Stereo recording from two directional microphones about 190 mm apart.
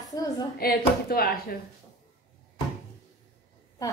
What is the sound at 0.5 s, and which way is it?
A woman's voice, 50° left (ahead or behind).